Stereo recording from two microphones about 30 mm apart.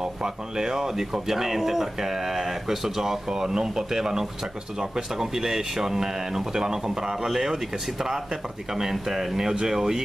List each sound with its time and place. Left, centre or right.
0.2 s speech: right